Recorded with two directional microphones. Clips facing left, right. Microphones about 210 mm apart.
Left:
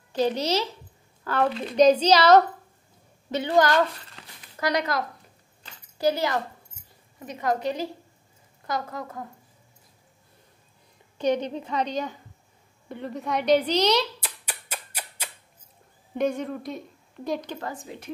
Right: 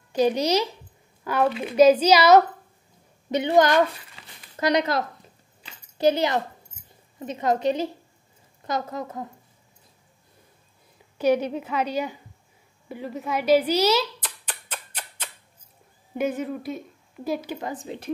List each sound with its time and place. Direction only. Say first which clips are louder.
0.1 s a woman's voice: right 3 dB; 10° right (ahead or behind)
11.1 s a woman's voice: right 3 dB; 10° right (ahead or behind)
14.2 s music: even; 10° left (ahead or behind)
16.2 s a woman's voice: even; 5° right (ahead or behind)